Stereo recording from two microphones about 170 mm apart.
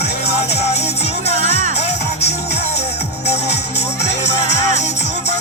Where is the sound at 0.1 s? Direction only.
80° left.